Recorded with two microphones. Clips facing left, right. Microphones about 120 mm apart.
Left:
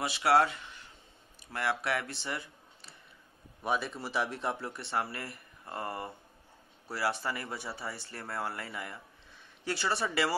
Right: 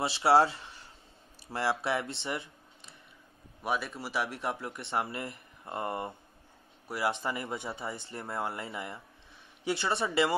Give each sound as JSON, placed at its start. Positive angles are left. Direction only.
{"t": 0.0, "sound": "speech", "side_deg": -30}
{"t": 3.6, "sound": "speech", "side_deg": -5}